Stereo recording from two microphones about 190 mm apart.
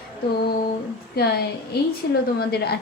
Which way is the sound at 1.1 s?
55° left (ahead or behind).